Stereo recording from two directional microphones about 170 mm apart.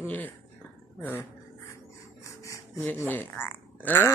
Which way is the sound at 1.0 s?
15° left (ahead or behind).